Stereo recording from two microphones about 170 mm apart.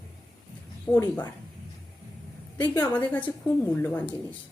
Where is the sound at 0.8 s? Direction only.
10° left (ahead or behind).